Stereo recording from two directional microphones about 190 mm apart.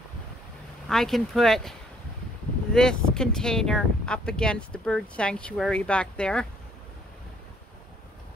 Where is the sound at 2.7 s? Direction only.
5° left (ahead or behind).